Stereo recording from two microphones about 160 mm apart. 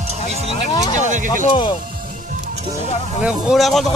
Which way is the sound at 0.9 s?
50° right (ahead or behind).